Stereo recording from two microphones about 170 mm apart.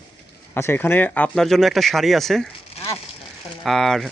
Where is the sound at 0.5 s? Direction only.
15° left (ahead or behind).